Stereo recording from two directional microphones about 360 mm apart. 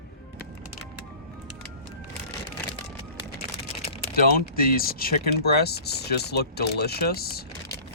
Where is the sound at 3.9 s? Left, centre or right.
Left.